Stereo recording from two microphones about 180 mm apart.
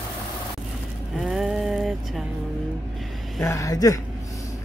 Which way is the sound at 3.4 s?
15° left (ahead or behind).